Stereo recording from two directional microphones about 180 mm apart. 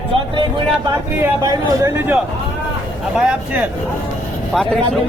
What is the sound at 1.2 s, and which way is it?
Speech, 20° right (ahead or behind).